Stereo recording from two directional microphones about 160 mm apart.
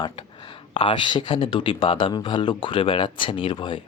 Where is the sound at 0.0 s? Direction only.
30° left (ahead or behind).